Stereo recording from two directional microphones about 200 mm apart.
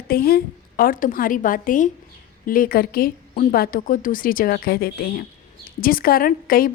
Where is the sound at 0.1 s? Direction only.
50° left (ahead or behind).